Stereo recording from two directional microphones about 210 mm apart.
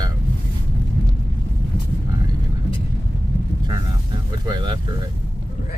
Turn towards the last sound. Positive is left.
turn(degrees=-20)  # may be behind; listen again after turning